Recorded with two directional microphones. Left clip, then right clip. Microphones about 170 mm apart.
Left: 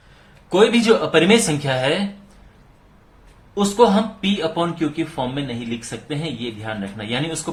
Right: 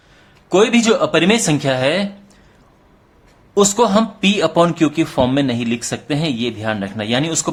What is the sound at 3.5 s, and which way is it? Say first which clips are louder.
Speech: right 2 dB; 55° right (ahead or behind).